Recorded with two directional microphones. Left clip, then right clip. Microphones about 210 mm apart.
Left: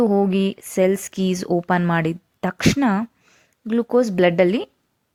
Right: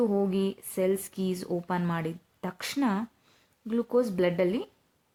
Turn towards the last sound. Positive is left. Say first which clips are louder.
# left 10 dB
turn(degrees=35)  # may be behind; listen again after turning